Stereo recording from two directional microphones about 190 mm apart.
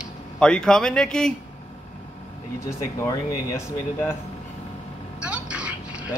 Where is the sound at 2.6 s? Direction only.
15° left (ahead or behind).